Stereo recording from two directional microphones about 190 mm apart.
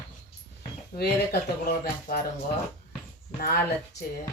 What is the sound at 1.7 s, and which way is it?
Speech, 55° left (ahead or behind).